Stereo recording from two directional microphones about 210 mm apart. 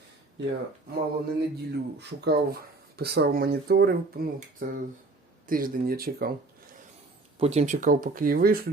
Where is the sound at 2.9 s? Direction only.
50° right (ahead or behind).